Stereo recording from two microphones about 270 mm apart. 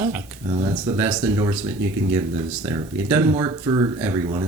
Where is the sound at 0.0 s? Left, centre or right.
Centre.